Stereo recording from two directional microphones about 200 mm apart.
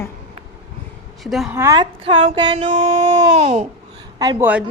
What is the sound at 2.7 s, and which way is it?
Speech, 35° right (ahead or behind).